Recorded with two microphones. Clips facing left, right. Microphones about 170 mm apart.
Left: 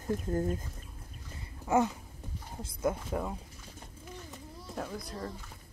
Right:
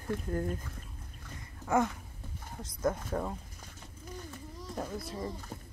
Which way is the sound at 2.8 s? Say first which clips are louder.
Even; 10° left (ahead or behind).